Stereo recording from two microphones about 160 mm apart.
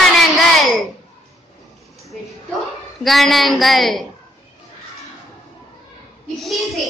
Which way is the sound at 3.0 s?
Centre (ahead or behind).